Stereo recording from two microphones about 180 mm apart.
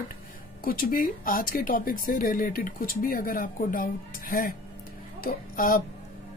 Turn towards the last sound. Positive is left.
turn(degrees=55)  # may be behind; listen again after turning